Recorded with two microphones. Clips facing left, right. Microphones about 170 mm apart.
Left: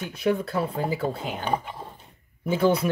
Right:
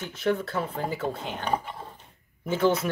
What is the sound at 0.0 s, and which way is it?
Speech, 10° left (ahead or behind).